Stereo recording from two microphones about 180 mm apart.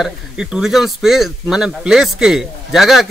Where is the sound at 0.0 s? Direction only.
5° right (ahead or behind).